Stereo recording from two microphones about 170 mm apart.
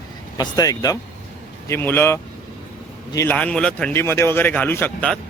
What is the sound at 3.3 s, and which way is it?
Speech, 5° left (ahead or behind).